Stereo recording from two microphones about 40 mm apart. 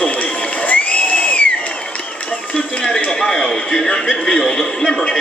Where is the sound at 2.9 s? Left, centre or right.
Centre.